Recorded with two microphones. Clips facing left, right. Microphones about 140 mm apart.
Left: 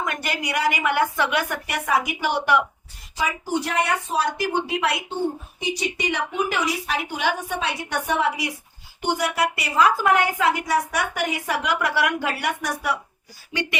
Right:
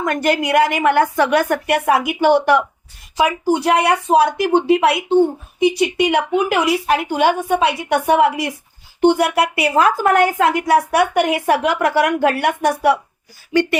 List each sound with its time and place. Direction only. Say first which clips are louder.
0.0 s a woman's voice: right 10 dB; 50° right (ahead or behind)
3.2 s a woman's voice: right 8 dB; 70° right (ahead or behind)